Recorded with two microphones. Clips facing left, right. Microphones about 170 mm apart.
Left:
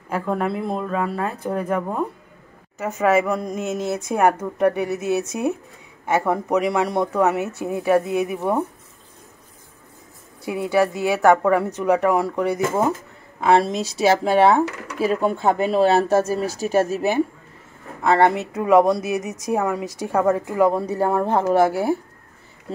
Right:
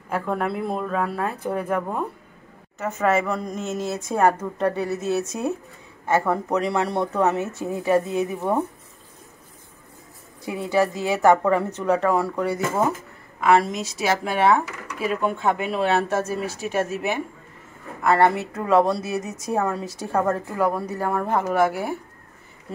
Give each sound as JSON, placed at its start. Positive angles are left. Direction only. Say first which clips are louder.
{"t": 0.1, "sound": "a woman's voice", "louder": "left 2 dB", "side_deg": 0}
{"t": 10.4, "sound": "a woman's voice", "louder": "left 2 dB", "side_deg": 10}
{"t": 13.4, "sound": "speech", "louder": "left 2 dB", "side_deg": 30}
{"t": 18.0, "sound": "a woman's voice", "louder": "left 1 dB", "side_deg": 20}